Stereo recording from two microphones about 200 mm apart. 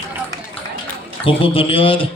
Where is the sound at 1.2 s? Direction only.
25° left (ahead or behind).